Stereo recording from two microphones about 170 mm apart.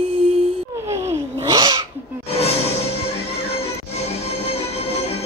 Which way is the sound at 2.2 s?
35° left (ahead or behind).